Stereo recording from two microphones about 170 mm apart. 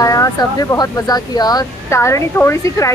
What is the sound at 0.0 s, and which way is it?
Speech, 20° left (ahead or behind).